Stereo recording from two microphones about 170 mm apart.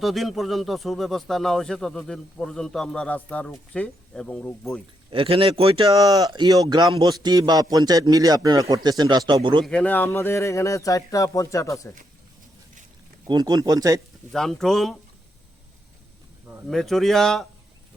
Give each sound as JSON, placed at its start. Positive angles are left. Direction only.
{"t": 0.0, "sound": "speech", "side_deg": 0}
{"t": 5.1, "sound": "speech", "side_deg": -30}
{"t": 9.6, "sound": "speech", "side_deg": 5}
{"t": 13.2, "sound": "speech", "side_deg": -25}
{"t": 14.3, "sound": "speech", "side_deg": 0}
{"t": 16.6, "sound": "speech", "side_deg": 0}